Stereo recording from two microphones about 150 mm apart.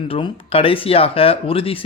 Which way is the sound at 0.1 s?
40° left (ahead or behind).